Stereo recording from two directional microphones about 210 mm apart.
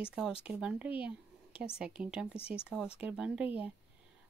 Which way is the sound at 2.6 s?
5° right (ahead or behind).